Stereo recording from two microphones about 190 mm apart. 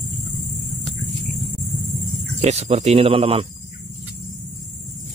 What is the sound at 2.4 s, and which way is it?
Speech, 35° right (ahead or behind).